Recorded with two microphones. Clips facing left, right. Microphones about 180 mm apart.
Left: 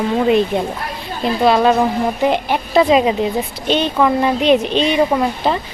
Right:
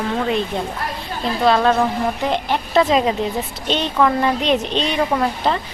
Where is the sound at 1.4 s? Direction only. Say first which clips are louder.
Left 2 dB; 10° left (ahead or behind).